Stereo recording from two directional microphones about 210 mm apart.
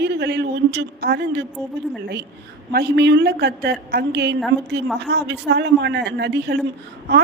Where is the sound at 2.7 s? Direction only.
50° right (ahead or behind).